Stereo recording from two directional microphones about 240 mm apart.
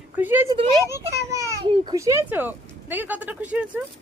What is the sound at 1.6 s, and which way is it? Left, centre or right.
Speech, right.